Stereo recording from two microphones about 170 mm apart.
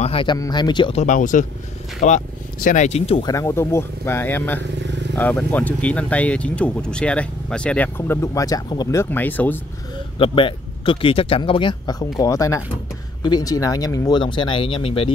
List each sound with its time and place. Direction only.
0.0 s speech: 30° left (ahead or behind)
1.0 s speech: 50° left (ahead or behind)
3.3 s speech: 20° left (ahead or behind)
9.1 s speech: 10° left (ahead or behind)
10.1 s speech: 30° left (ahead or behind)